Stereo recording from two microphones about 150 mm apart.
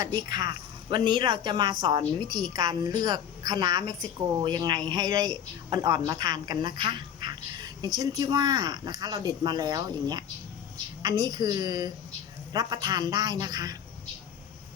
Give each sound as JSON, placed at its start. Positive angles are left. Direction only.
{"t": 0.3, "sound": "speech", "side_deg": -30}